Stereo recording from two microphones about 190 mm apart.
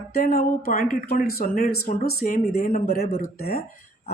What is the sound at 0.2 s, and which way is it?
Speech, 55° left (ahead or behind).